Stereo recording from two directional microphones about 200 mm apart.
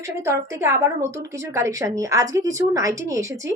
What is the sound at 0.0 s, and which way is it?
A woman's voice, 15° right (ahead or behind).